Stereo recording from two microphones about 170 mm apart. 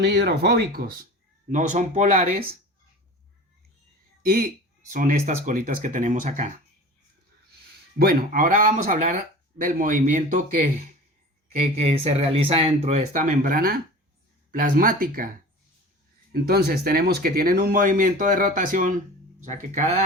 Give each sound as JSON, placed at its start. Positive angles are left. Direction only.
{"t": 0.0, "sound": "speech", "side_deg": -85}
{"t": 1.5, "sound": "speech", "side_deg": -50}
{"t": 4.2, "sound": "speech", "side_deg": -55}
{"t": 7.9, "sound": "speech", "side_deg": -55}
{"t": 11.5, "sound": "speech", "side_deg": -40}
{"t": 16.3, "sound": "speech", "side_deg": -65}